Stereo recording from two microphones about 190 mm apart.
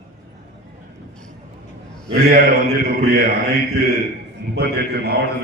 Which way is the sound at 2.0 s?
55° right (ahead or behind).